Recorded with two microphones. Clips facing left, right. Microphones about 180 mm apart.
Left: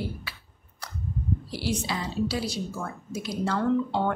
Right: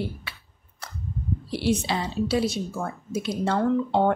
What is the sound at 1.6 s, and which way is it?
A woman's voice, 25° right (ahead or behind).